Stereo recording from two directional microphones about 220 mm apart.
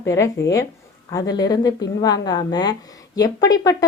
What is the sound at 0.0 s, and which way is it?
A woman's voice, 15° left (ahead or behind).